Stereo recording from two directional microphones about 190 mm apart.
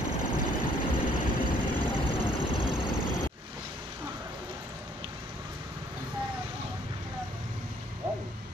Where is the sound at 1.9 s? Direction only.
30° left (ahead or behind).